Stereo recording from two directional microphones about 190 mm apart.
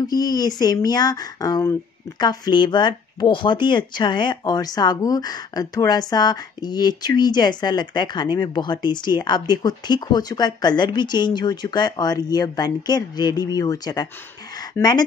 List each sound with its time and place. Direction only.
0.0 s speech: 20° left (ahead or behind)